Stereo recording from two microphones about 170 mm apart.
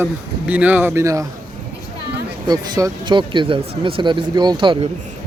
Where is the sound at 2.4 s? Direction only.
25° right (ahead or behind).